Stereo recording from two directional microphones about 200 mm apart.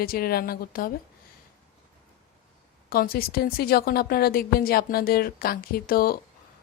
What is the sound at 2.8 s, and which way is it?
A woman's voice, 45° left (ahead or behind).